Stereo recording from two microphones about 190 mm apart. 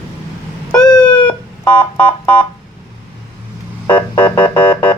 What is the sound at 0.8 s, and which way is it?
Cat, 20° left (ahead or behind).